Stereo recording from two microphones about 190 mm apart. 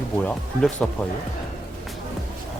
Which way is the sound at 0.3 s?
5° left (ahead or behind).